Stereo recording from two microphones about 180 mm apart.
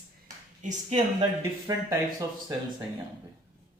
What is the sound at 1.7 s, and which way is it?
Speech, 20° right (ahead or behind).